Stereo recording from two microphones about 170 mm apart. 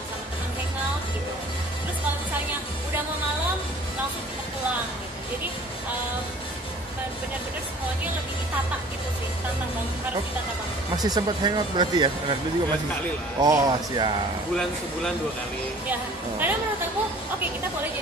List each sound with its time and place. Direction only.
11.0 s speech: 25° right (ahead or behind)
13.4 s speech: 25° right (ahead or behind)
15.9 s a woman's voice: 10° right (ahead or behind)